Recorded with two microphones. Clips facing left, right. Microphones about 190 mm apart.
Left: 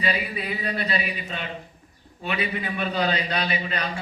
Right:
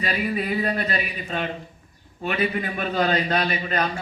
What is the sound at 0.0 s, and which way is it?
A man's voice, 45° right (ahead or behind).